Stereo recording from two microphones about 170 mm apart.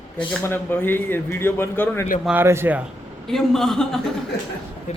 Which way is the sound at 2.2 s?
10° right (ahead or behind).